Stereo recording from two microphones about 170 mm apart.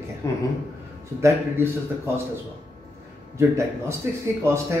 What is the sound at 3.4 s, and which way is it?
Speech, 15° right (ahead or behind).